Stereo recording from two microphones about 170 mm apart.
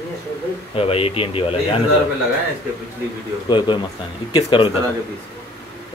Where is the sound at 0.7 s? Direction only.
35° left (ahead or behind).